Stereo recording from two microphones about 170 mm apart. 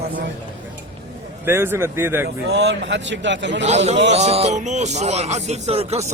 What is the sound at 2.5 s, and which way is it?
Speech, 90° right.